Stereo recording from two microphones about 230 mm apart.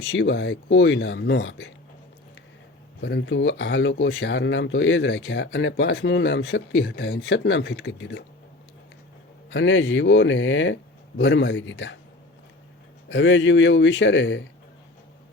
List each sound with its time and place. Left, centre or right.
0.1 s speech: left
3.0 s speech: left
9.5 s speech: left
13.1 s speech: left